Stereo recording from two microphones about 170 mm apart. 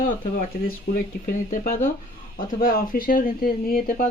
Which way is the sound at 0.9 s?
55° left (ahead or behind).